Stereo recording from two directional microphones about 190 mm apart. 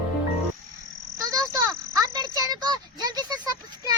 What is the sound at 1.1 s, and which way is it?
Insect, 20° right (ahead or behind).